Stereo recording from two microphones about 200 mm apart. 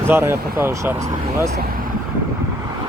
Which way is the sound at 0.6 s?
15° right (ahead or behind).